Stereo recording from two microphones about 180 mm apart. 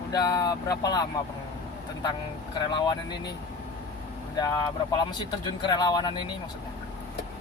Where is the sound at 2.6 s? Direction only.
25° left (ahead or behind).